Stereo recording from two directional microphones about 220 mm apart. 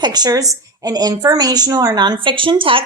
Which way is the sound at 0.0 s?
20° right (ahead or behind).